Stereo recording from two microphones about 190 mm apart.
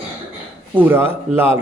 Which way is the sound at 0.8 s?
10° right (ahead or behind).